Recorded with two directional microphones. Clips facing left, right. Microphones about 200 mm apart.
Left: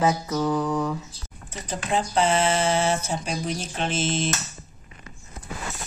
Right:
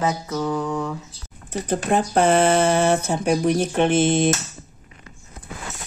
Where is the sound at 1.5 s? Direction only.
55° right (ahead or behind).